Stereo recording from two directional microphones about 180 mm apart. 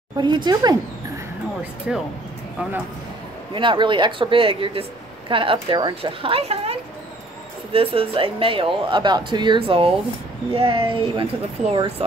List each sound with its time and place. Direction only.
0.2 s speech: 25° right (ahead or behind)
1.6 s speech: 5° right (ahead or behind)
3.5 s speech: 25° right (ahead or behind)